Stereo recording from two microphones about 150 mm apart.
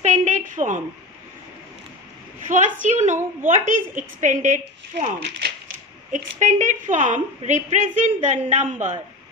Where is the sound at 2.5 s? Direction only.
55° right (ahead or behind).